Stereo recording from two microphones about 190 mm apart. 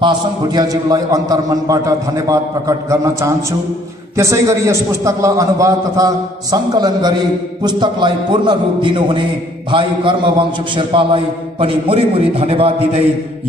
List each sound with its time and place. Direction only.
0.0 s a man's voice: 20° right (ahead or behind)